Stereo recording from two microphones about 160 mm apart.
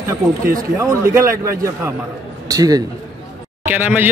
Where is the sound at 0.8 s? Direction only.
20° right (ahead or behind).